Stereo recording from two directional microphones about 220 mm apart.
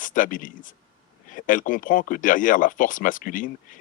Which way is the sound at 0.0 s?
35° left (ahead or behind).